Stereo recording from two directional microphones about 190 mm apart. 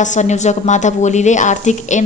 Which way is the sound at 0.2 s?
40° left (ahead or behind).